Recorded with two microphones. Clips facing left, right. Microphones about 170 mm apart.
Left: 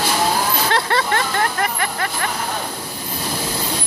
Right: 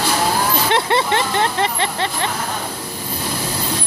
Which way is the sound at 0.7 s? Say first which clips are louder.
Right 3 dB; 20° right (ahead or behind).